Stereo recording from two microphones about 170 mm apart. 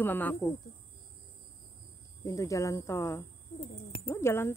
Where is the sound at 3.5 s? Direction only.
30° left (ahead or behind).